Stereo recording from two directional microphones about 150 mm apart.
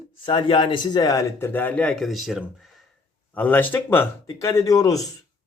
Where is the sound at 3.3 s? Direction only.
10° left (ahead or behind).